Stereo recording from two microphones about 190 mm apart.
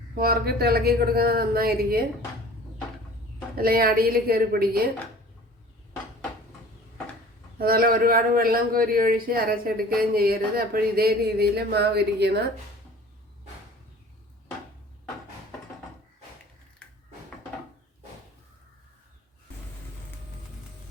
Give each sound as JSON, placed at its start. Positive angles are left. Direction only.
{"t": 0.2, "sound": "a man's voice", "side_deg": -55}
{"t": 3.6, "sound": "a man's voice", "side_deg": -50}
{"t": 7.6, "sound": "a man's voice", "side_deg": -50}
{"t": 16.8, "sound": "a sound", "side_deg": 5}